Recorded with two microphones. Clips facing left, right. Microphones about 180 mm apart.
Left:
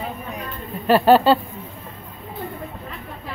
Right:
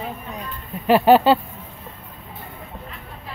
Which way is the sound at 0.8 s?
15° right (ahead or behind).